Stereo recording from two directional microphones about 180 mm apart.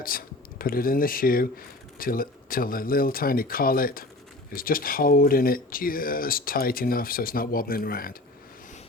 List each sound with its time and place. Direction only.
0.0 s speech: 55° left (ahead or behind)